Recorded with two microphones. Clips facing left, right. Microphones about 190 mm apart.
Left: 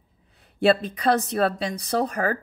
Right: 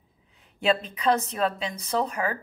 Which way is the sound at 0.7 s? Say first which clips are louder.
Left 3 dB; 40° left (ahead or behind).